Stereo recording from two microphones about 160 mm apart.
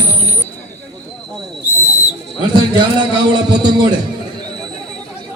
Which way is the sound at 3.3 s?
30° right (ahead or behind).